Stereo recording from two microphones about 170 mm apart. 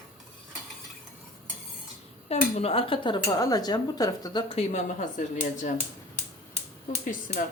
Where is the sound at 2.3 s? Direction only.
35° left (ahead or behind).